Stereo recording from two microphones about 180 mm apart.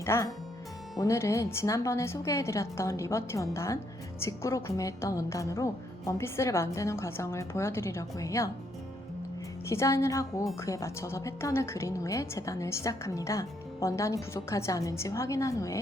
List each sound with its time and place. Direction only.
0.0 s a woman's voice: 15° left (ahead or behind)
9.6 s a woman's voice: 15° left (ahead or behind)